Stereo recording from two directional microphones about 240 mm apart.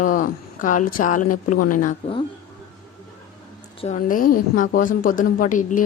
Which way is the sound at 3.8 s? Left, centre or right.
Left.